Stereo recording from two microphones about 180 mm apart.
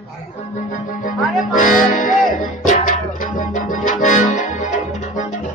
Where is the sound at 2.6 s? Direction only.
45° left (ahead or behind).